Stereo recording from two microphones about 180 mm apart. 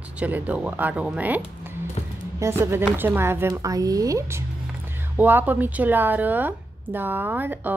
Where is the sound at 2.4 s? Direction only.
15° right (ahead or behind).